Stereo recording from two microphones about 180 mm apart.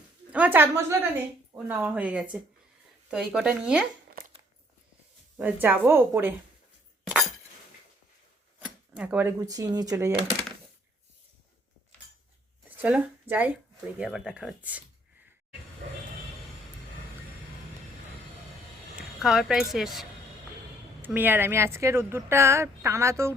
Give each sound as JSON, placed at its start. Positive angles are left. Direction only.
{"t": 0.3, "sound": "speech", "side_deg": -10}
{"t": 5.4, "sound": "speech", "side_deg": -10}
{"t": 8.6, "sound": "speech", "side_deg": -5}
{"t": 12.7, "sound": "speech", "side_deg": -10}
{"t": 18.9, "sound": "speech", "side_deg": 0}